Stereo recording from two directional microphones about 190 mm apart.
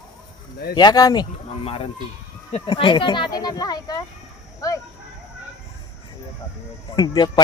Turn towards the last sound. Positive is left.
turn(degrees=20)  # may be behind; listen again after turning